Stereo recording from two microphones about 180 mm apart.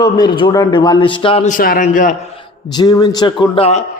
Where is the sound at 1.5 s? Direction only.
50° left (ahead or behind).